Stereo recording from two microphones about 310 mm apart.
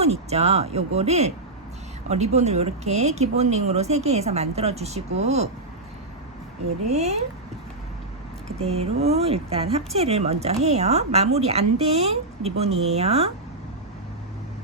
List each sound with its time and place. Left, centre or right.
0.0 s speech: right
6.9 s speech: right
8.5 s speech: centre